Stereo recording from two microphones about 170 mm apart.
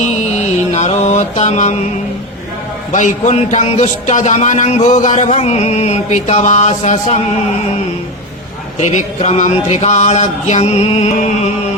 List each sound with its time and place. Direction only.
0.0 s mantra: 40° left (ahead or behind)
2.9 s speech: 45° left (ahead or behind)
8.8 s speech: 40° left (ahead or behind)